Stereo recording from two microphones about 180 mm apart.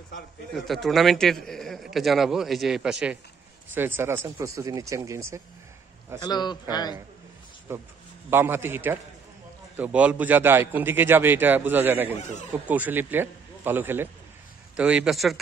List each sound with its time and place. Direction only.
0.7 s a man's voice: centre (ahead or behind); by 5.4 s 15° right (ahead or behind)
6.2 s a man's voice: 25° left (ahead or behind)
7.7 s a man's voice: 15° right (ahead or behind)